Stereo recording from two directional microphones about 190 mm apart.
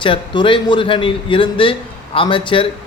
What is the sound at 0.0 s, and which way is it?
A man's voice, 25° left (ahead or behind).